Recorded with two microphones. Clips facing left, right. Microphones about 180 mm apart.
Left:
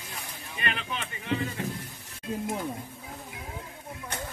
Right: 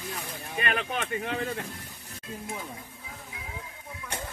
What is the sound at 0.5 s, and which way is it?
Speech, 50° right (ahead or behind).